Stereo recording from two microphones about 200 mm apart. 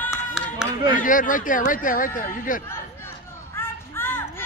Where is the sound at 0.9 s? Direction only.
40° left (ahead or behind).